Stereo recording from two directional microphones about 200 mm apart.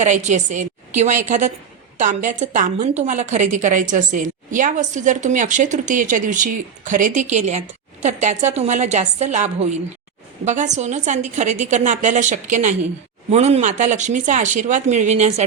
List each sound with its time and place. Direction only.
0.0 s a woman's voice: 35° right (ahead or behind)